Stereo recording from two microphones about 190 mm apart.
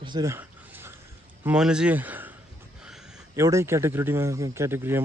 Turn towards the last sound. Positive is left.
turn(degrees=-10)  # may be behind; listen again after turning